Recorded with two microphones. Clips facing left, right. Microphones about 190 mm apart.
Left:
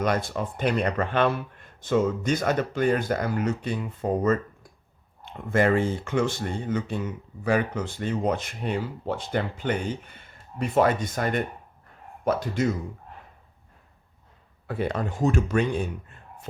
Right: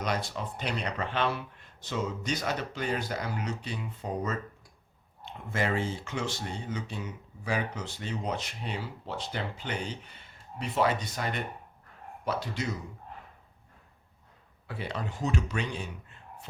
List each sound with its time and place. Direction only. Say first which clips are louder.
0.0 s speech: left 7 dB; 50° left (ahead or behind)
14.7 s speech: left 8 dB; 50° left (ahead or behind)